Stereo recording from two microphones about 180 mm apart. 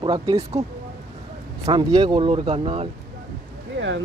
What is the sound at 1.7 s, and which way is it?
Speech, 25° right (ahead or behind).